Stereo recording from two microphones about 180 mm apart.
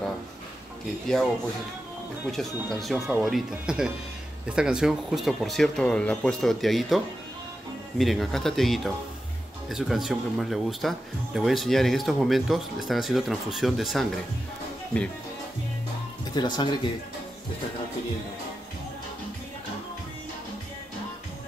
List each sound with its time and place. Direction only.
1.0 s speech: 5° left (ahead or behind)
2.3 s speech: centre (ahead or behind)
8.0 s speech: centre (ahead or behind)
16.3 s speech: 25° left (ahead or behind)